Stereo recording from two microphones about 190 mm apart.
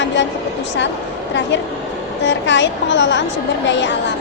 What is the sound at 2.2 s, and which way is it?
A woman's voice, 70° left (ahead or behind).